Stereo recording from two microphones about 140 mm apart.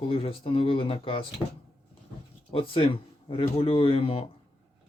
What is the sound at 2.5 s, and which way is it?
Speech, 40° left (ahead or behind).